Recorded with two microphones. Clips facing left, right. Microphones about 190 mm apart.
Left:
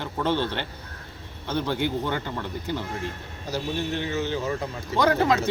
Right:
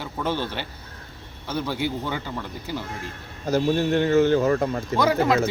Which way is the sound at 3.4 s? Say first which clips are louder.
Right 8 dB; 50° right (ahead or behind).